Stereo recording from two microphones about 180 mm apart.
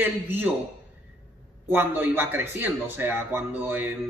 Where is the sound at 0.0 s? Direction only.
10° right (ahead or behind).